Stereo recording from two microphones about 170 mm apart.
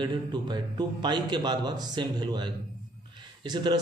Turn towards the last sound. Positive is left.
turn(degrees=-25)  # may be behind; listen again after turning